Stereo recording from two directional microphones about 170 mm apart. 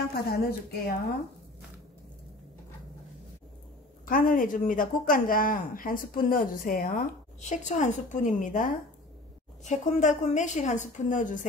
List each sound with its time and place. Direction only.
0.1 s a woman's voice: 65° left (ahead or behind)
4.0 s speech: 55° left (ahead or behind)